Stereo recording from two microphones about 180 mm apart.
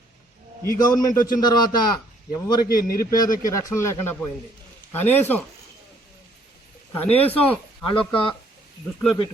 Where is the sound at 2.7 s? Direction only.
55° left (ahead or behind).